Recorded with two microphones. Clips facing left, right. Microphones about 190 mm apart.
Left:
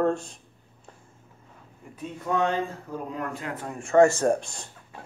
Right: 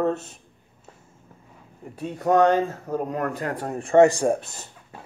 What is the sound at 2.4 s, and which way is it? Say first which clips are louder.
Speech: right 7 dB; 40° right (ahead or behind).